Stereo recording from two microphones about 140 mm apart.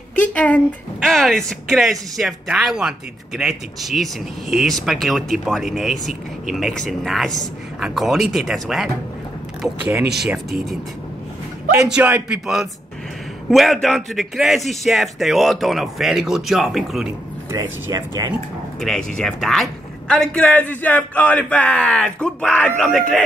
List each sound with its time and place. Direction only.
0.2 s a man's voice: 10° left (ahead or behind)
11.9 s a man's voice: 10° right (ahead or behind)
17.6 s speech: 25° right (ahead or behind)
18.8 s a man's voice: 5° left (ahead or behind)